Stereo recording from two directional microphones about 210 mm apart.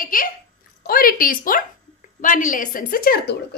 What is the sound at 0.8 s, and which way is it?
A woman's voice, 45° left (ahead or behind).